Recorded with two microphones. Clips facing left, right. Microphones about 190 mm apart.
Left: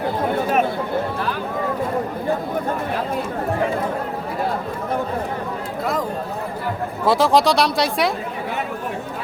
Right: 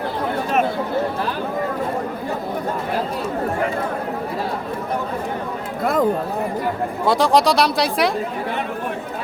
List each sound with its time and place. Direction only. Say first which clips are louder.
5.8 s chatter: right 5 dB; 55° right (ahead or behind)
7.0 s speech: even; centre (ahead or behind)